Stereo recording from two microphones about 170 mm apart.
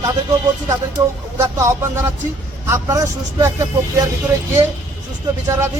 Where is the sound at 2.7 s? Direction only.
15° right (ahead or behind).